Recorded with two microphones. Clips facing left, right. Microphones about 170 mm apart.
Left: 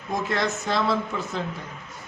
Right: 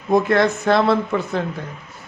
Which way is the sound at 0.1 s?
55° right (ahead or behind).